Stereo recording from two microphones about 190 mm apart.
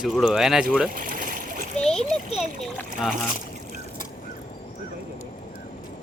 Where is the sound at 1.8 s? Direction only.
5° left (ahead or behind).